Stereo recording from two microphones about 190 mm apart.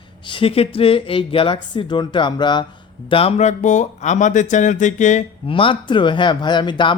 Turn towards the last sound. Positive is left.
turn(degrees=25)  # may be behind; listen again after turning